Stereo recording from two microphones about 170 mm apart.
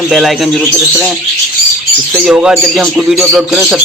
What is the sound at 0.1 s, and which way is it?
Speech, centre (ahead or behind).